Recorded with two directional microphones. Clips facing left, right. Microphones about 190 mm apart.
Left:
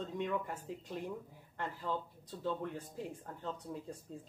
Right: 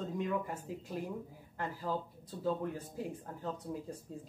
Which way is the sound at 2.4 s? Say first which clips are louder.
Right 3 dB; 5° right (ahead or behind).